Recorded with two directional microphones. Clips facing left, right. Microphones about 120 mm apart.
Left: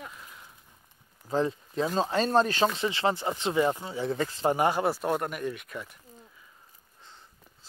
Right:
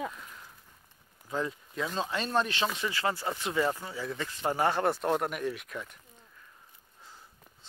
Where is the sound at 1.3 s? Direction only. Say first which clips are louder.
Left 6 dB; 30° left (ahead or behind).